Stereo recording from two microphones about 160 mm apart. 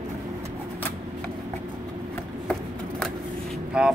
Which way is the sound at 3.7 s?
5° right (ahead or behind).